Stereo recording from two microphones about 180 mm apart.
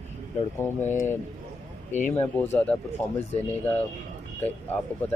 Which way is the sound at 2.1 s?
10° left (ahead or behind).